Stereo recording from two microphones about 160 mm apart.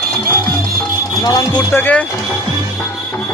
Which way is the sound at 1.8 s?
10° left (ahead or behind).